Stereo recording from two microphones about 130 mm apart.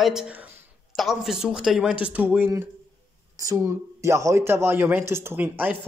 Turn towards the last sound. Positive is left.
turn(degrees=-15)  # may be behind; listen again after turning